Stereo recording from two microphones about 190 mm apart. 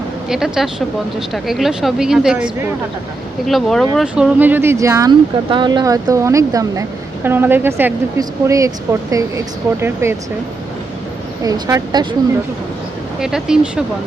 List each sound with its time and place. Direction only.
0.3 s speech: centre (ahead or behind)
11.4 s speech: 20° right (ahead or behind)
13.1 s speech: 5° right (ahead or behind)